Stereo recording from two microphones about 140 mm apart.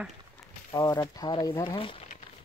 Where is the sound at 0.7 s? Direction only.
25° left (ahead or behind).